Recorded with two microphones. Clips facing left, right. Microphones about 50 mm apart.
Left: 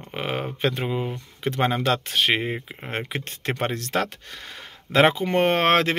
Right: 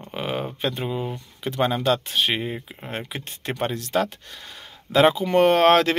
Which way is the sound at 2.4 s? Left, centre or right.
Left.